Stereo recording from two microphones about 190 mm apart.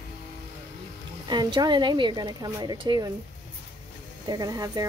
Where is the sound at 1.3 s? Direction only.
25° right (ahead or behind).